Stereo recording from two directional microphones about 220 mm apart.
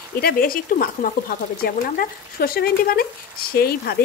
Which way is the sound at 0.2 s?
45° left (ahead or behind).